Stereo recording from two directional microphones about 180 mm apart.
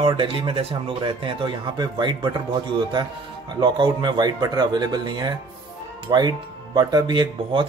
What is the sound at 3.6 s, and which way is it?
Speech, 25° right (ahead or behind).